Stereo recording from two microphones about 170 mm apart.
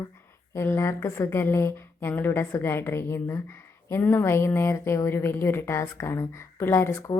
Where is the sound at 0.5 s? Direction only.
15° left (ahead or behind).